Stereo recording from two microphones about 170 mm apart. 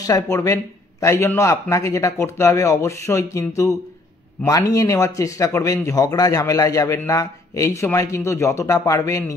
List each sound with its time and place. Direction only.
0.0 s speech: 20° left (ahead or behind)